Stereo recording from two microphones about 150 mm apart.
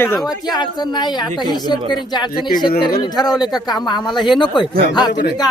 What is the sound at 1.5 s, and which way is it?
Speech, 30° left (ahead or behind).